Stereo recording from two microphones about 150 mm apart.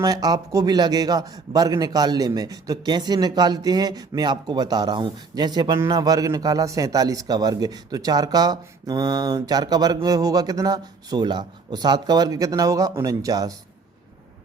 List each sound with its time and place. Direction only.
0.0 s a man's voice: 25° right (ahead or behind)